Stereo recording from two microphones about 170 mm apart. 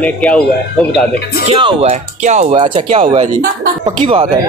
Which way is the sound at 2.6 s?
30° right (ahead or behind).